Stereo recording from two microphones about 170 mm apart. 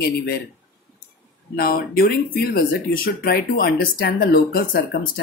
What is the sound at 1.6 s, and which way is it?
Speech, 65° left (ahead or behind).